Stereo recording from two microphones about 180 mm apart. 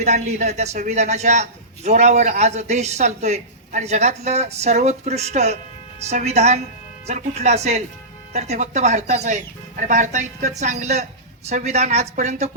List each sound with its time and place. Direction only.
0.0 s a man's voice: 40° right (ahead or behind)